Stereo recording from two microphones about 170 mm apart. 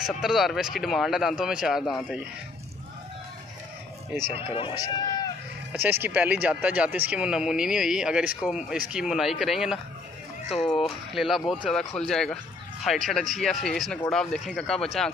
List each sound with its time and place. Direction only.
0.0 s speech: centre (ahead or behind)
4.3 s speech: 35° left (ahead or behind)
5.7 s speech: 10° right (ahead or behind)
11.1 s speech: centre (ahead or behind)